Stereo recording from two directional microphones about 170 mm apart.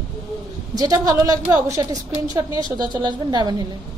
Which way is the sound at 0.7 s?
20° right (ahead or behind).